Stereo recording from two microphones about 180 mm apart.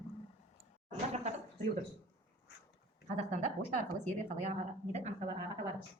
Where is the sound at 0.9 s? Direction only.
40° right (ahead or behind).